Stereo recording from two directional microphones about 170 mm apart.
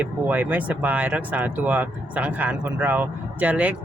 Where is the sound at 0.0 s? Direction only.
10° right (ahead or behind).